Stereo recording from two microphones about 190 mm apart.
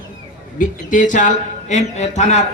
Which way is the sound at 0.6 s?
40° left (ahead or behind).